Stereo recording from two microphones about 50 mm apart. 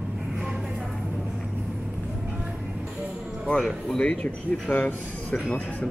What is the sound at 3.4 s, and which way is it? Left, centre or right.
Speech, centre.